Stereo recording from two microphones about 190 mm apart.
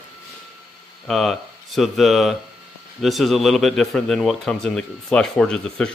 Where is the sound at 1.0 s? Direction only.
Centre (ahead or behind).